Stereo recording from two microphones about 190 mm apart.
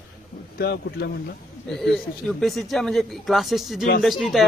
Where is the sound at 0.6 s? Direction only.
60° left (ahead or behind).